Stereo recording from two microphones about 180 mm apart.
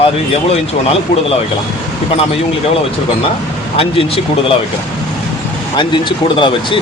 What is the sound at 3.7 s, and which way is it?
Speech, 30° left (ahead or behind).